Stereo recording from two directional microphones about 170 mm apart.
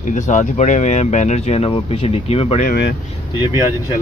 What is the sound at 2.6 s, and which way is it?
Speech, 65° left (ahead or behind).